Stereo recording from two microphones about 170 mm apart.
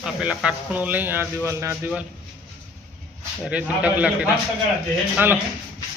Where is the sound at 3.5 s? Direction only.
10° right (ahead or behind).